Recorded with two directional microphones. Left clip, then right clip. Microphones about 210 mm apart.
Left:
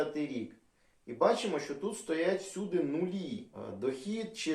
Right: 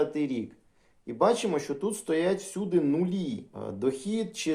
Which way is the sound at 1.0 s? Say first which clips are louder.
Right 4 dB; 55° right (ahead or behind).